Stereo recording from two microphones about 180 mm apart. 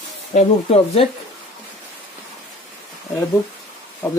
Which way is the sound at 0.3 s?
35° left (ahead or behind).